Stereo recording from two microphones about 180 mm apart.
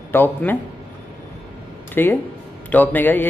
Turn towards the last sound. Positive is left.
turn(degrees=10)  # may be behind; listen again after turning